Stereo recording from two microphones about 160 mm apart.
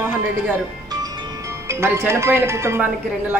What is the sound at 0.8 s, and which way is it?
Speech, 25° right (ahead or behind).